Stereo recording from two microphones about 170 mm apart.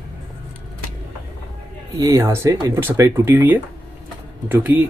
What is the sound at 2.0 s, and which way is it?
Speech, 20° right (ahead or behind).